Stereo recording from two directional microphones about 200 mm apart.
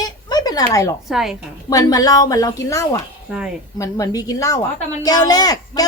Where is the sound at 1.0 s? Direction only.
Centre (ahead or behind).